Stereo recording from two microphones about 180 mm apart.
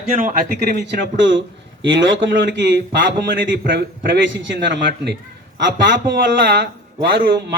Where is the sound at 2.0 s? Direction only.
90° right.